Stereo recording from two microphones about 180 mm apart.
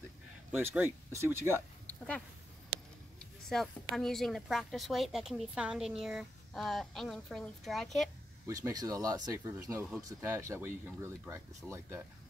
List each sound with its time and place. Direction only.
0.5 s speech: 10° right (ahead or behind)
3.2 s a sound: 5° left (ahead or behind)
3.9 s a woman's voice: centre (ahead or behind)
8.5 s speech: 20° right (ahead or behind)